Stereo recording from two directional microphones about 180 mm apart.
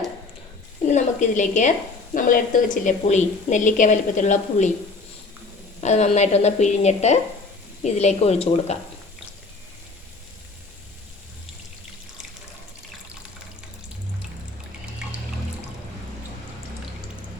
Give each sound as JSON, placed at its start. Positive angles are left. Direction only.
{"t": 0.9, "sound": "a woman's voice", "side_deg": 40}
{"t": 5.8, "sound": "a woman's voice", "side_deg": 40}